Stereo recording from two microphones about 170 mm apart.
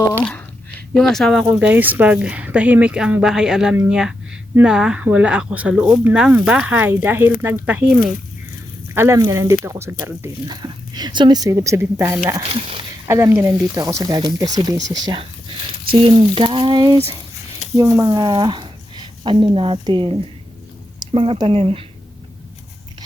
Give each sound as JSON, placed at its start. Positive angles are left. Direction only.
{"t": 0.1, "sound": "speech", "side_deg": 10}
{"t": 12.4, "sound": "speech", "side_deg": -35}
{"t": 13.1, "sound": "speech", "side_deg": -15}